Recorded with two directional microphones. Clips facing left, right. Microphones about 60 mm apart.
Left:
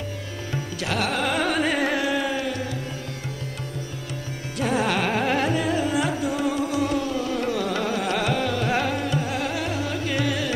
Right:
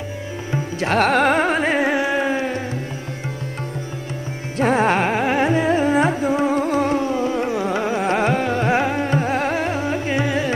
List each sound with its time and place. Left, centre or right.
0.5 s carnatic music: right
4.6 s music: right
5.1 s carnatic music: right